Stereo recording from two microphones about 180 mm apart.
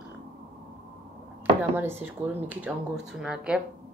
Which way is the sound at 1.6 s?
10° right (ahead or behind).